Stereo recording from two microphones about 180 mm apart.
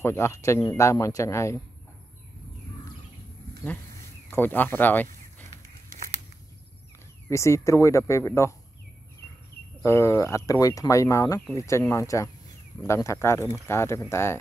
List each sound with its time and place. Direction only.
0.0 s speech: 15° left (ahead or behind)
4.3 s speech: 10° left (ahead or behind)
7.2 s speech: 15° left (ahead or behind)
9.8 s speech: 15° left (ahead or behind)